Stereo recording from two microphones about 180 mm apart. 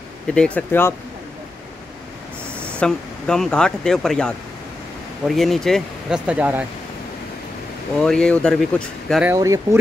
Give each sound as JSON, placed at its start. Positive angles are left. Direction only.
{"t": 0.3, "sound": "speech", "side_deg": 5}
{"t": 2.6, "sound": "speech", "side_deg": 5}
{"t": 8.0, "sound": "speech", "side_deg": 5}
{"t": 9.2, "sound": "speech", "side_deg": -15}